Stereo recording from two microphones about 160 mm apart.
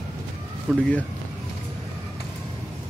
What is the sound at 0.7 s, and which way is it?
Speech, 10° left (ahead or behind).